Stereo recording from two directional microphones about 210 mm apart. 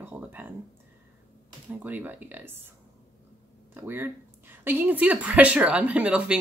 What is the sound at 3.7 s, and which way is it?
Speech, 10° right (ahead or behind).